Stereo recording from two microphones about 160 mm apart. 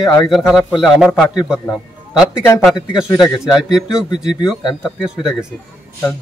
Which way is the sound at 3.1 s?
20° left (ahead or behind).